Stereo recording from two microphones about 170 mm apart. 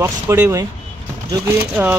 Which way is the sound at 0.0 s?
15° right (ahead or behind).